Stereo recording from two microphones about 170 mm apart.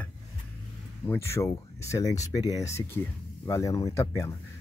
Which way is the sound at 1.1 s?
15° left (ahead or behind).